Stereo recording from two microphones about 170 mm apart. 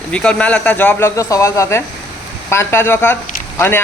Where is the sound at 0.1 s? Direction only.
5° left (ahead or behind).